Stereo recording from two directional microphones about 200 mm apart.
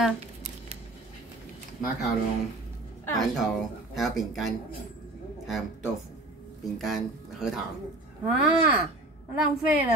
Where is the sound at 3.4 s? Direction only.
Centre (ahead or behind).